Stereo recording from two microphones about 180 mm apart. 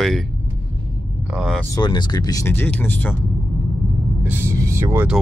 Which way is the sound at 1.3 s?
Centre (ahead or behind).